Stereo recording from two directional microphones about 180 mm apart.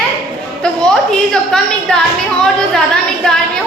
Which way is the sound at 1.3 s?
5° left (ahead or behind).